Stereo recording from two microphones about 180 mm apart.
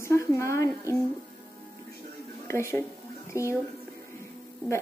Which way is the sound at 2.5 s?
15° left (ahead or behind).